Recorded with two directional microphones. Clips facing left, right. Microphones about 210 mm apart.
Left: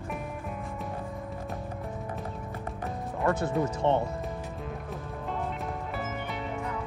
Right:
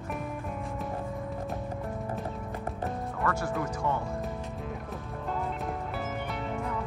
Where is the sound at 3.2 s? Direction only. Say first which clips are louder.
Left 5 dB; 25° left (ahead or behind).